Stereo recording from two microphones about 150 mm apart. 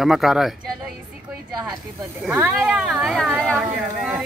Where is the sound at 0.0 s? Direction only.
Centre (ahead or behind).